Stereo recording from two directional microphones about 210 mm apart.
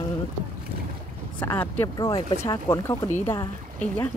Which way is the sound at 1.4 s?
10° left (ahead or behind).